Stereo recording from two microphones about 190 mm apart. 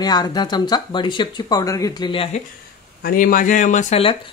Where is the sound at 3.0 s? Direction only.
50° left (ahead or behind); by 4.2 s 30° left (ahead or behind).